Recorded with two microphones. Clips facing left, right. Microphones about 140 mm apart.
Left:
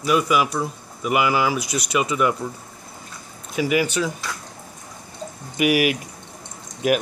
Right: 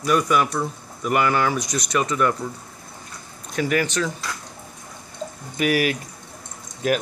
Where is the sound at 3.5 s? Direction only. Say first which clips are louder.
Left 1 dB; 10° left (ahead or behind).